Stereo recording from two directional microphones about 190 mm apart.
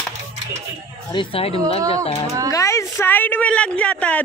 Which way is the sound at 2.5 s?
15° left (ahead or behind).